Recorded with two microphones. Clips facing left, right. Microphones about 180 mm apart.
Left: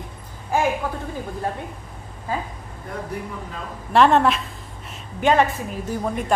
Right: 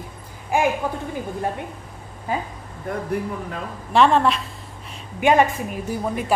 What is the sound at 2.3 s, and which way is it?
Speech, 20° right (ahead or behind).